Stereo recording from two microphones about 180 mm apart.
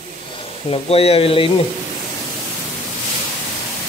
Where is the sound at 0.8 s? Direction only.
30° left (ahead or behind).